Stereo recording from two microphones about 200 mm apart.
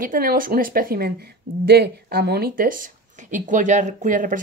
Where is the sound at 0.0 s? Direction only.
45° right (ahead or behind).